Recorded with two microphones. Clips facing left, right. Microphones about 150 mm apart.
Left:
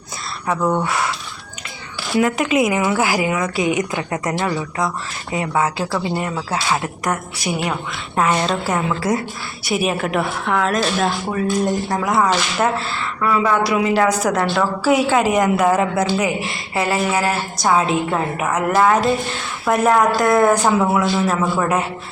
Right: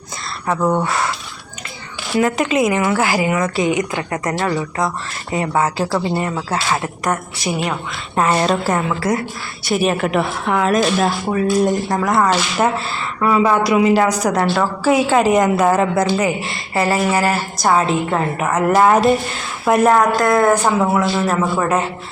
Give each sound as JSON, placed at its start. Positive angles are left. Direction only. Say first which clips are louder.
{"t": 0.4, "sound": "speech", "louder": "right 2 dB", "side_deg": -10}
{"t": 2.1, "sound": "a woman's voice", "louder": "right 1 dB", "side_deg": 5}
{"t": 6.5, "sound": "a woman's voice", "louder": "right 1 dB", "side_deg": 10}
{"t": 9.6, "sound": "a woman's voice", "louder": "right 3 dB", "side_deg": 5}
{"t": 12.3, "sound": "a woman's voice", "louder": "right 2 dB", "side_deg": -10}
{"t": 20.5, "sound": "speech", "louder": "right 1 dB", "side_deg": -10}
{"t": 20.9, "sound": "a woman's voice", "louder": "right 1 dB", "side_deg": 0}